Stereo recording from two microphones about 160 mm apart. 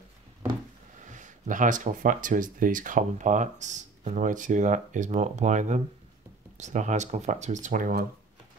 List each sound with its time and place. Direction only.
1.0 s speech: 50° right (ahead or behind)